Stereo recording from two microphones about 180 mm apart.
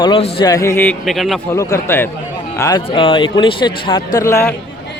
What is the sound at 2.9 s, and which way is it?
Speech, 30° left (ahead or behind).